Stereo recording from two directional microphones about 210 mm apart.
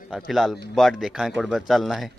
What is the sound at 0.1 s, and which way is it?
Music, centre (ahead or behind).